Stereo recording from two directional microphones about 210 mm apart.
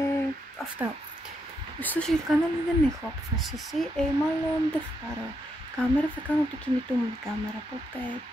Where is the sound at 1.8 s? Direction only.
5° left (ahead or behind).